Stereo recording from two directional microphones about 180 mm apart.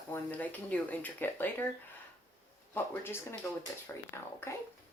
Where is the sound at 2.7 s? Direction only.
15° left (ahead or behind).